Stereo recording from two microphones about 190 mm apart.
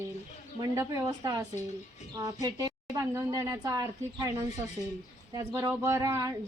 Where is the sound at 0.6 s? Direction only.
15° right (ahead or behind).